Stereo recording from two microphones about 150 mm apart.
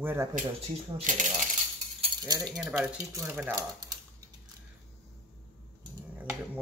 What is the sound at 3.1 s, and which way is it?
Speech, 20° right (ahead or behind).